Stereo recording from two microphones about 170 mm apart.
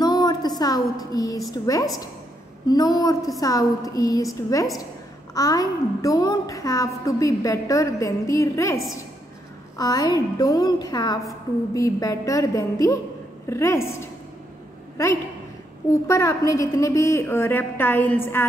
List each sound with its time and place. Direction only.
0.0 s a sound: 25° left (ahead or behind)
1.5 s a woman's voice: 20° left (ahead or behind)
9.8 s a woman's voice: 20° left (ahead or behind)
16.1 s a woman's voice: 15° left (ahead or behind)